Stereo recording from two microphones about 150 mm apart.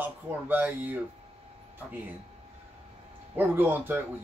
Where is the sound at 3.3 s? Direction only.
15° right (ahead or behind).